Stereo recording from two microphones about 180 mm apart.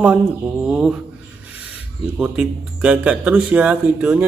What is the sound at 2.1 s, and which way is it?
Speech, 5° right (ahead or behind).